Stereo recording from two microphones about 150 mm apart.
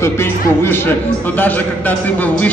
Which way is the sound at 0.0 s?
15° left (ahead or behind).